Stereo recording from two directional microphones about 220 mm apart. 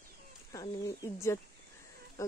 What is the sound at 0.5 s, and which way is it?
Speech, 15° left (ahead or behind).